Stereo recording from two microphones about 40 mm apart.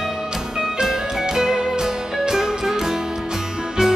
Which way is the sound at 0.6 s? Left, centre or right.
Centre.